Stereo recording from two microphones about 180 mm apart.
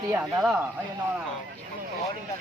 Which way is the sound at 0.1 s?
10° right (ahead or behind).